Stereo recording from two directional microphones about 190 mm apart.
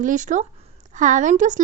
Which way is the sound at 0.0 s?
40° right (ahead or behind).